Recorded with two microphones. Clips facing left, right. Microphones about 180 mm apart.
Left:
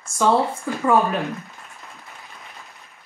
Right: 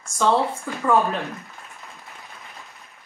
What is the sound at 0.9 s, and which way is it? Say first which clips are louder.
Speech: left 1 dB; centre (ahead or behind).